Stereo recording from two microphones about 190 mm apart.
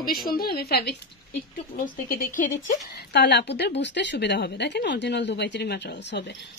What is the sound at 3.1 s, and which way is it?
A woman's voice, 65° left (ahead or behind).